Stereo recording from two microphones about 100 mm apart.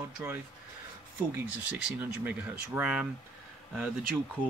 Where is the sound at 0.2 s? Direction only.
15° right (ahead or behind).